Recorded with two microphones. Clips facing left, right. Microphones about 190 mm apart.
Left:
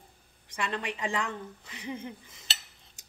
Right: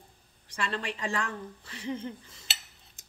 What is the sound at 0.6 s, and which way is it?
Speech, 15° left (ahead or behind).